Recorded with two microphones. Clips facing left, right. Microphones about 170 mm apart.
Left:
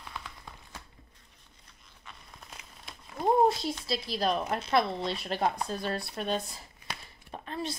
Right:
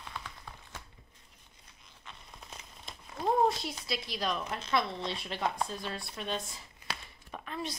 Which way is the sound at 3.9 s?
30° left (ahead or behind).